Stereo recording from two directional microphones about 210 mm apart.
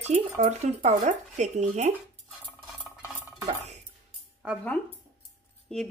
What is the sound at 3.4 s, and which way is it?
Cutlery, 30° right (ahead or behind).